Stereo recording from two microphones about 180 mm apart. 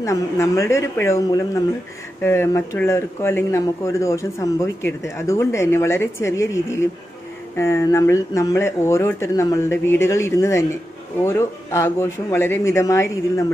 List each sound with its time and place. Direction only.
0.0 s speech: 15° left (ahead or behind)